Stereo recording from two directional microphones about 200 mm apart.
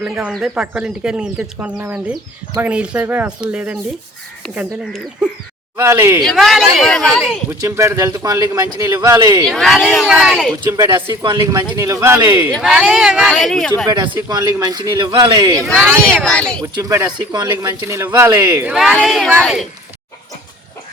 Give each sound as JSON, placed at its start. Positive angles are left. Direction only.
{"t": 0.0, "sound": "a man's voice", "side_deg": -5}
{"t": 5.7, "sound": "a man's voice", "side_deg": -15}
{"t": 6.2, "sound": "speech", "side_deg": 0}
{"t": 7.6, "sound": "a man's voice", "side_deg": -15}
{"t": 9.5, "sound": "speech", "side_deg": 0}
{"t": 10.6, "sound": "speech", "side_deg": -20}
{"t": 12.5, "sound": "speech", "side_deg": 0}
{"t": 13.8, "sound": "speech", "side_deg": -20}
{"t": 15.5, "sound": "speech", "side_deg": 0}
{"t": 16.6, "sound": "speech", "side_deg": -15}
{"t": 18.6, "sound": "speech", "side_deg": -5}